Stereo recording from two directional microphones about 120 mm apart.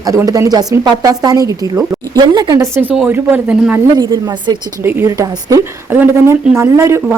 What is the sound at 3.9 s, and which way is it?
Speech, 35° right (ahead or behind).